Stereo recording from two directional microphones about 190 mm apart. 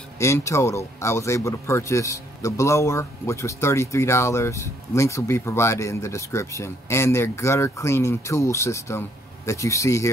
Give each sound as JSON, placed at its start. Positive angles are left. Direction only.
{"t": 0.2, "sound": "speech", "side_deg": 15}